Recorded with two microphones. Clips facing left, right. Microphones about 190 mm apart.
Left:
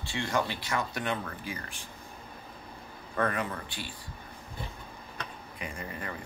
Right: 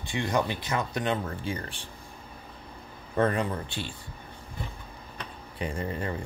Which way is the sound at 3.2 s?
25° right (ahead or behind).